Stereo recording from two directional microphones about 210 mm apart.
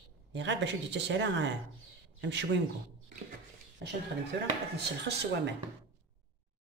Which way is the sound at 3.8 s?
55° right (ahead or behind).